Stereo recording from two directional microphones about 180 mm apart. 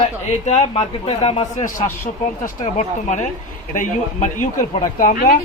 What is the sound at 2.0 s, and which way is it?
Speech, 45° left (ahead or behind).